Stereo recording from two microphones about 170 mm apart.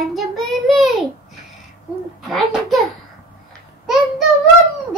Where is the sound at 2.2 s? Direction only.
Centre (ahead or behind).